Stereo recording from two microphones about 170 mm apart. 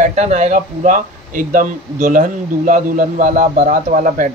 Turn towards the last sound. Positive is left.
turn(degrees=-50)  # may be behind; listen again after turning